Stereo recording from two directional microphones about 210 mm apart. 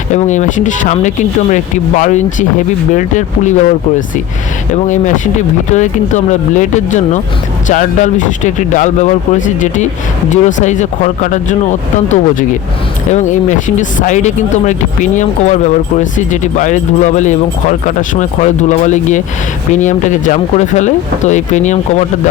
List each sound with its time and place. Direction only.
0.1 s speech: 35° left (ahead or behind)
4.7 s speech: 35° left (ahead or behind)